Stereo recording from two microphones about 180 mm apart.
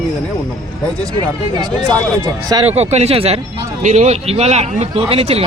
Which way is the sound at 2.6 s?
35° right (ahead or behind).